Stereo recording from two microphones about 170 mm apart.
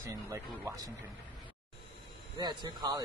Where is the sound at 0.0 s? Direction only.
15° right (ahead or behind).